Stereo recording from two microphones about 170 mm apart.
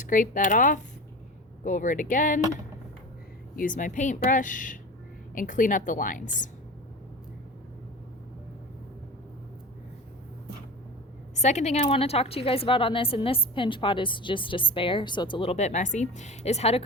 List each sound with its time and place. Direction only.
0.0 s speech: 50° left (ahead or behind)
3.5 s speech: 55° left (ahead or behind)
11.3 s a woman's voice: 45° left (ahead or behind)